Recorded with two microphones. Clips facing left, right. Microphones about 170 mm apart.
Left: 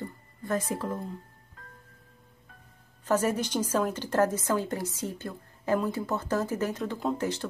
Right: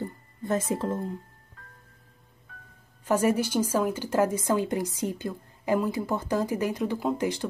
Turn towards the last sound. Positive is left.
turn(degrees=-15)  # may be behind; listen again after turning